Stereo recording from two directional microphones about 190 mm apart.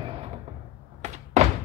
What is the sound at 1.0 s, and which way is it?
Thunk, 40° right (ahead or behind).